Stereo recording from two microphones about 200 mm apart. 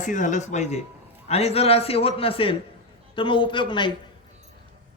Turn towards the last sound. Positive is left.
turn(degrees=25)  # may be behind; listen again after turning